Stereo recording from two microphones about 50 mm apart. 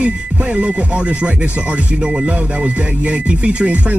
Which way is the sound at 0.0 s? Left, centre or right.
Right.